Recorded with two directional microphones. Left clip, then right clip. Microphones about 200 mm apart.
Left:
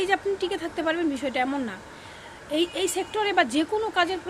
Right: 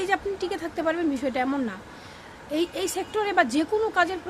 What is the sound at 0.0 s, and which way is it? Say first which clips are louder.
A woman's voice: left 1 dB; 15° right (ahead or behind).